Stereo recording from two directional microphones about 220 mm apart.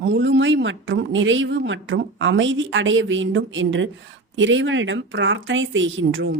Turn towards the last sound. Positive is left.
turn(degrees=-60)  # may be behind; listen again after turning